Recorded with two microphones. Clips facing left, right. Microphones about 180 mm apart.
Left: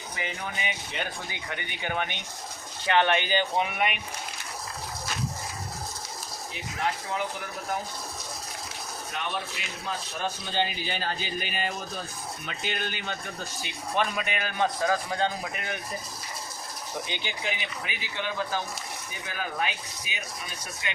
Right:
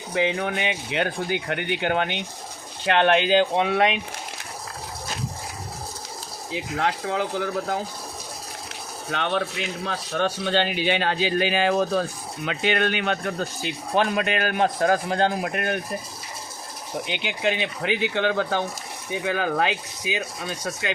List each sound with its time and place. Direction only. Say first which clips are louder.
0.1 s speech: right 12 dB; 85° right
6.5 s speech: right 6 dB; 90° right
9.0 s speech: right 9 dB; 90° right; by 12.0 s 70° right (ahead or behind)
12.5 s speech: right 11 dB; 85° right; by 15.8 s 60° right (ahead or behind)
17.1 s speech: right 12 dB; 75° right (ahead or behind)